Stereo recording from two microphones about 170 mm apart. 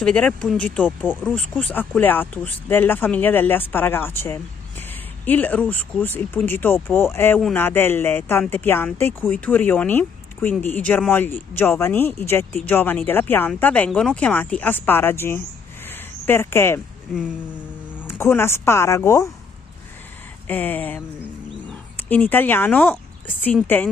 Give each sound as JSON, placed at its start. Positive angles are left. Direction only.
{"t": 0.0, "sound": "speech", "side_deg": 5}
{"t": 17.1, "sound": "speech", "side_deg": 0}
{"t": 18.0, "sound": "speech", "side_deg": 15}
{"t": 20.4, "sound": "speech", "side_deg": 10}